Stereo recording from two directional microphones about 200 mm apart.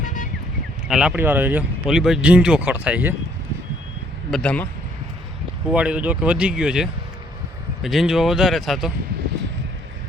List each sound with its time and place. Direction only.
0.0 s a sound: 40° left (ahead or behind)
0.9 s speech: 5° right (ahead or behind)
4.3 s speech: 5° left (ahead or behind)
5.7 s speech: 5° right (ahead or behind)